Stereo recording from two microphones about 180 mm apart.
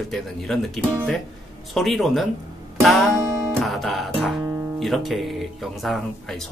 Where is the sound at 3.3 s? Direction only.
20° right (ahead or behind).